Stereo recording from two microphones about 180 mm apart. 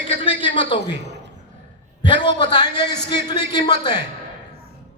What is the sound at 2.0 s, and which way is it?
A man's voice, 25° left (ahead or behind).